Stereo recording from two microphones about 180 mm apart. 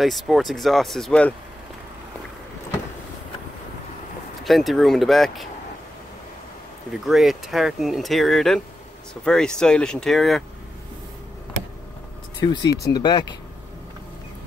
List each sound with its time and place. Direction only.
0.0 s speech: centre (ahead or behind)
4.5 s speech: centre (ahead or behind)
7.1 s speech: centre (ahead or behind)
12.4 s speech: 25° left (ahead or behind)